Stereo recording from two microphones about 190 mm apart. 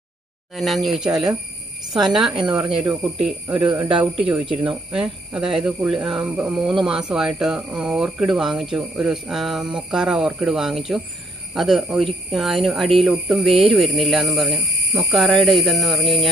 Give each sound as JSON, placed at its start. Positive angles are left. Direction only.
{"t": 0.6, "sound": "speech", "side_deg": 0}
{"t": 3.7, "sound": "speech", "side_deg": -25}
{"t": 4.0, "sound": "speech", "side_deg": -5}